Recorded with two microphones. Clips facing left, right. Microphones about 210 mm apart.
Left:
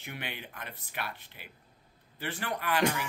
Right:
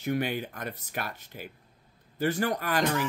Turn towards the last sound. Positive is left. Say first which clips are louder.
# right 2 dB
turn(degrees=10)  # may be behind; listen again after turning